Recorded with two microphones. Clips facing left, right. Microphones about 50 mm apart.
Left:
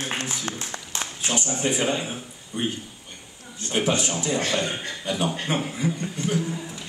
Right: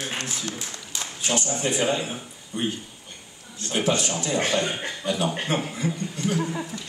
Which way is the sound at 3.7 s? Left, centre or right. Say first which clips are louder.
Even; centre.